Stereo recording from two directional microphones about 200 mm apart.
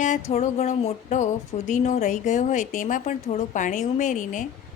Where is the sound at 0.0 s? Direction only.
35° left (ahead or behind).